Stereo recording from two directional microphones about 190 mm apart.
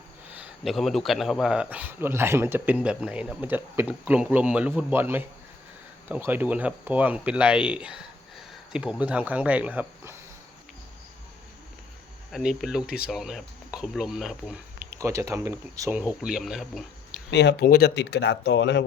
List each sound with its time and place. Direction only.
0.3 s speech: centre (ahead or behind)
12.3 s speech: centre (ahead or behind)
14.9 s speech: 15° right (ahead or behind)
16.2 s speech: centre (ahead or behind)
17.3 s speech: 65° left (ahead or behind)